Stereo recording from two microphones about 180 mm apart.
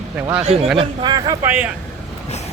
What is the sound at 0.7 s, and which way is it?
Speech, 25° right (ahead or behind).